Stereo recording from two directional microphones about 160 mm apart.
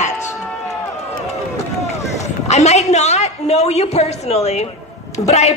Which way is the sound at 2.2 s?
45° left (ahead or behind).